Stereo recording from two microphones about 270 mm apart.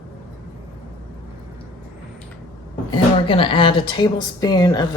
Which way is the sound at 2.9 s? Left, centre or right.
Centre.